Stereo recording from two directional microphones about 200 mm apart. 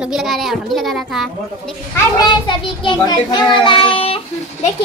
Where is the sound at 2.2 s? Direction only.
25° left (ahead or behind).